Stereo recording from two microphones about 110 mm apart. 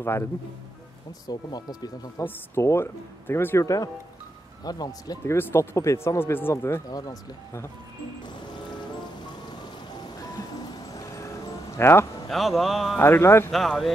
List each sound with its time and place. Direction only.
1.2 s speech: 35° left (ahead or behind)
2.2 s speech: 25° left (ahead or behind)
5.2 s speech: 25° left (ahead or behind)
6.9 s speech: 35° left (ahead or behind)
10.9 s a sound: 30° left (ahead or behind)
12.3 s speech: centre (ahead or behind)
13.0 s speech: 20° left (ahead or behind)
13.5 s speech: centre (ahead or behind)